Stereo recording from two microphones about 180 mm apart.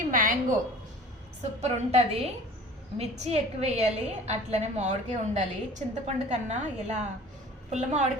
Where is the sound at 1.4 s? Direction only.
35° right (ahead or behind).